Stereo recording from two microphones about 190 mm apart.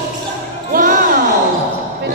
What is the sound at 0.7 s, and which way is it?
Music, 45° right (ahead or behind).